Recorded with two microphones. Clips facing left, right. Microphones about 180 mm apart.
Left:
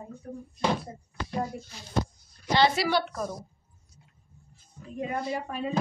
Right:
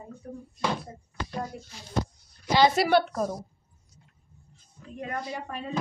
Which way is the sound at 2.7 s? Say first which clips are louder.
Right 4 dB; 50° right (ahead or behind).